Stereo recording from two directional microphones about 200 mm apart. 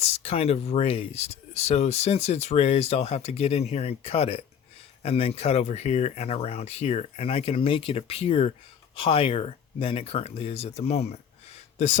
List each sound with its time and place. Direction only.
0.0 s speech: 30° left (ahead or behind)